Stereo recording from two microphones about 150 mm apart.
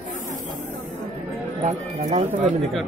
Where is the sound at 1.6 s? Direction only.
50° right (ahead or behind).